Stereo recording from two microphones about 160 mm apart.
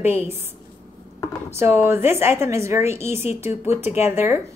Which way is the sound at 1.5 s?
15° right (ahead or behind).